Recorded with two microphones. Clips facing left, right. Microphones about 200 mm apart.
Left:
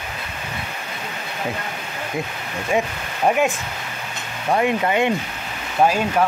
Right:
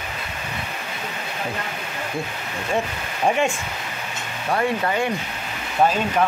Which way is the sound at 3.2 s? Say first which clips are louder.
Left 2 dB; 5° left (ahead or behind).